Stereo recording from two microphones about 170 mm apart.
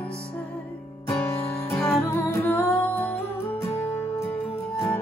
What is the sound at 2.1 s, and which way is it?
Music, 15° left (ahead or behind).